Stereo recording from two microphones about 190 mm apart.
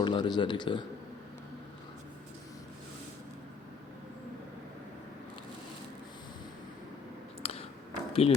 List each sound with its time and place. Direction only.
0.0 s speech: 25° left (ahead or behind)
7.4 s a sound: 30° left (ahead or behind)
8.1 s speech: 30° left (ahead or behind)